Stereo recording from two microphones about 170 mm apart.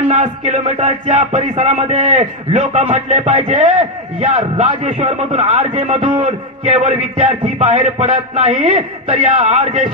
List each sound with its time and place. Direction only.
0.1 s a man's voice: 40° right (ahead or behind)
8.7 s a man's voice: 30° right (ahead or behind)
9.2 s a man's voice: 40° right (ahead or behind)